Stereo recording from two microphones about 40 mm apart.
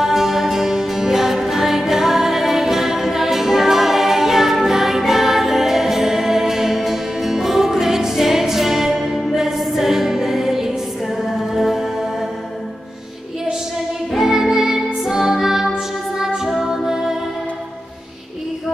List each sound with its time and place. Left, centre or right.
0.0 s music: centre
14.1 s music: centre